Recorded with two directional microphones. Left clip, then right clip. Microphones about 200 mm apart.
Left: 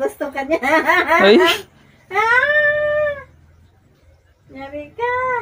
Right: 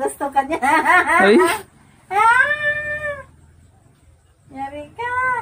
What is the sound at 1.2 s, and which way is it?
Speech, 5° right (ahead or behind).